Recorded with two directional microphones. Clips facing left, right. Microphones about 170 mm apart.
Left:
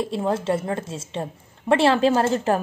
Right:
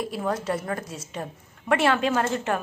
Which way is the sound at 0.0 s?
25° left (ahead or behind).